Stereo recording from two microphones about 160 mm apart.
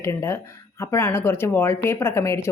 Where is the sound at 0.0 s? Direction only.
15° left (ahead or behind).